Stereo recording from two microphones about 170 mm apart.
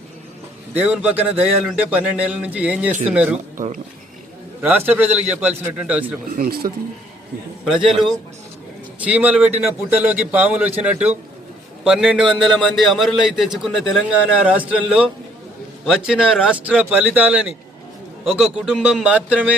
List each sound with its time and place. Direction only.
0.8 s a man's voice: 10° right (ahead or behind)
4.6 s a man's voice: 10° right (ahead or behind)
6.3 s speech: 60° right (ahead or behind)
7.6 s a man's voice: centre (ahead or behind)
9.0 s a man's voice: 10° right (ahead or behind)